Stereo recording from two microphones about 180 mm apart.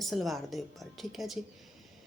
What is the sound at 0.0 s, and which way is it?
A woman's voice, centre (ahead or behind).